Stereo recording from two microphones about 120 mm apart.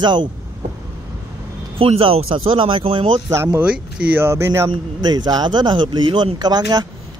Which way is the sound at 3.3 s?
25° right (ahead or behind).